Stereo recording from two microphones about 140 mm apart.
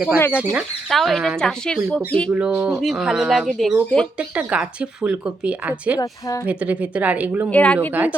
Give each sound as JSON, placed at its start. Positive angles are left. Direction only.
{"t": 0.2, "sound": "speech", "side_deg": 15}
{"t": 0.5, "sound": "speech", "side_deg": 0}
{"t": 2.3, "sound": "speech", "side_deg": -10}
{"t": 6.0, "sound": "speech", "side_deg": 25}
{"t": 6.5, "sound": "speech", "side_deg": -10}
{"t": 7.5, "sound": "speech", "side_deg": 10}